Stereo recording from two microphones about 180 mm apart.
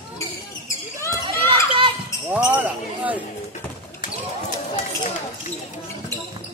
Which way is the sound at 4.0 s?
45° left (ahead or behind).